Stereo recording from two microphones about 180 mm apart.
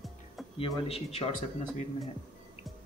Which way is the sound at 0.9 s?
35° left (ahead or behind).